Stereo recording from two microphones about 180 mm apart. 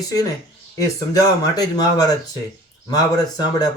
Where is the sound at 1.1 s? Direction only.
20° left (ahead or behind).